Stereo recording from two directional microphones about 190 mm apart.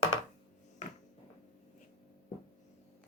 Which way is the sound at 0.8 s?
40° left (ahead or behind).